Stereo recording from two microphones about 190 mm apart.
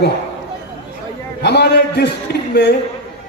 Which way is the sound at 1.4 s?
60° left (ahead or behind).